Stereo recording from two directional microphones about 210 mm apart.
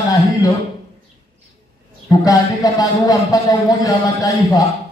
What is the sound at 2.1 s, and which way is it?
Speech, 15° left (ahead or behind).